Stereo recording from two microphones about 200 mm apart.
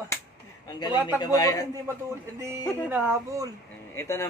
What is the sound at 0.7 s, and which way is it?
Speech, 20° left (ahead or behind).